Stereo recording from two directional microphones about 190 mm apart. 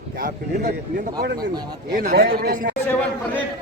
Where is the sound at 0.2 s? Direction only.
50° right (ahead or behind).